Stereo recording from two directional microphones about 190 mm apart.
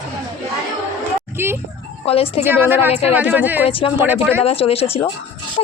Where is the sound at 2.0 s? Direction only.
30° left (ahead or behind).